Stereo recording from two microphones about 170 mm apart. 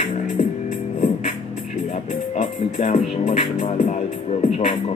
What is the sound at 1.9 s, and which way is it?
Speech, 45° left (ahead or behind).